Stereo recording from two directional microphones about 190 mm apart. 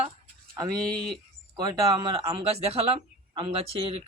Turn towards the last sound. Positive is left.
turn(degrees=-30)  # may be behind; listen again after turning